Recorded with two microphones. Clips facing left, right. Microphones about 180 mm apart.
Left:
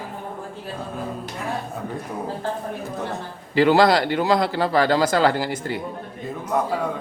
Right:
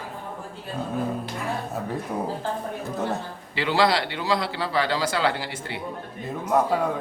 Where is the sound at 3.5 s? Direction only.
45° left (ahead or behind).